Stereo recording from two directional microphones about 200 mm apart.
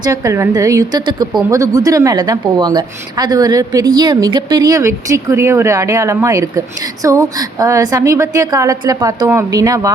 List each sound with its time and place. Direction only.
0.0 s a woman's voice: 15° right (ahead or behind)